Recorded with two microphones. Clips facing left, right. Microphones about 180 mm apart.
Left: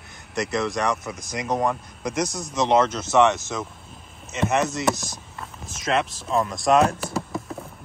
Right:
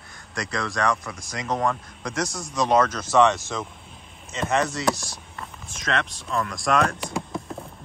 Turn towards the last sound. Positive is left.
turn(degrees=5)  # may be behind; listen again after turning